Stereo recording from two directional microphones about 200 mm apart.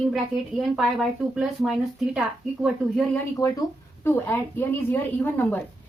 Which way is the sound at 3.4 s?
20° left (ahead or behind).